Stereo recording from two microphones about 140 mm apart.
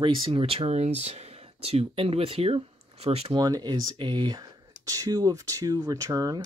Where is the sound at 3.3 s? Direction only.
30° right (ahead or behind).